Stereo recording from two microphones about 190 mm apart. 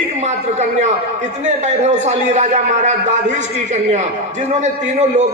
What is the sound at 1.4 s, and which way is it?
A man's voice, 40° right (ahead or behind).